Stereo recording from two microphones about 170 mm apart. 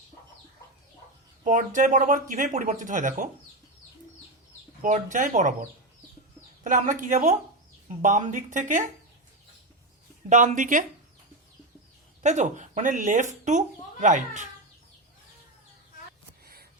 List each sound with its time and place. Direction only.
1.5 s speech: 50° right (ahead or behind)
4.8 s speech: 45° right (ahead or behind)
6.7 s speech: 50° right (ahead or behind)
10.2 s speech: 45° right (ahead or behind)
12.2 s speech: 45° right (ahead or behind)